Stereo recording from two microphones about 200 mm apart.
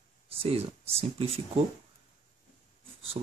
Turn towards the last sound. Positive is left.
turn(degrees=-40)  # may be behind; listen again after turning